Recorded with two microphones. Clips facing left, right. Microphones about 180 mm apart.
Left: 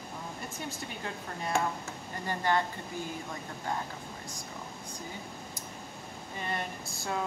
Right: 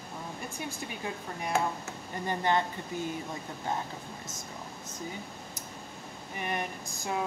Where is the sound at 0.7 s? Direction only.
15° right (ahead or behind).